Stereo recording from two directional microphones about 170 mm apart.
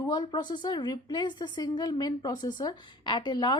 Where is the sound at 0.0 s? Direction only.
20° left (ahead or behind).